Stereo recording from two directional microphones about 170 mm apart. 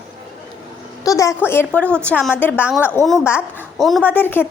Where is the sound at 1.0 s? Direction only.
20° left (ahead or behind).